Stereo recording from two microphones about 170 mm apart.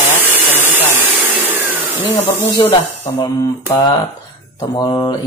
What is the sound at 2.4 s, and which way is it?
Speech, 15° left (ahead or behind).